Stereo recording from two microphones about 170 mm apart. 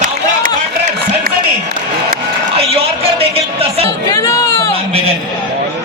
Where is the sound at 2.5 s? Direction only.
35° right (ahead or behind).